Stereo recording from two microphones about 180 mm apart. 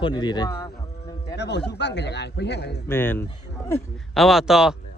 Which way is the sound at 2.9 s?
10° left (ahead or behind).